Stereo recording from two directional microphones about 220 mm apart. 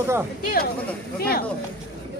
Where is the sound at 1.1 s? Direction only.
45° left (ahead or behind).